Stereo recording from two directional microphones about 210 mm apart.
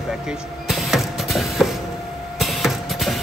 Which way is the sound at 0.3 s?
Centre (ahead or behind).